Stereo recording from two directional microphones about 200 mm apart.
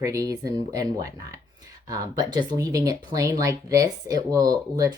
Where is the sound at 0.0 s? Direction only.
15° right (ahead or behind).